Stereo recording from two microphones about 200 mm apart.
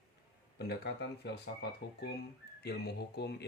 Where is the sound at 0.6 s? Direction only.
55° left (ahead or behind).